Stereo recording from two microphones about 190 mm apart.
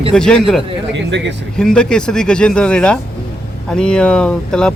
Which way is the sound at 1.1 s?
65° right (ahead or behind).